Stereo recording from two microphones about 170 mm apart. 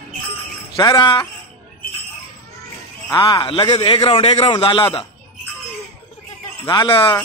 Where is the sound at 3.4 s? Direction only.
30° left (ahead or behind).